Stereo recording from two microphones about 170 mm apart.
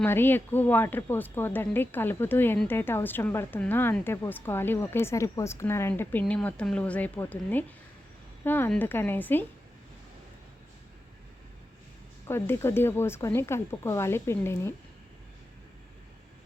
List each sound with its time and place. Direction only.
0.0 s speech: 10° left (ahead or behind)
12.3 s speech: 15° left (ahead or behind)